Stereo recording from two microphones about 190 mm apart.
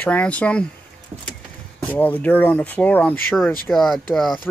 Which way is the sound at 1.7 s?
10° left (ahead or behind).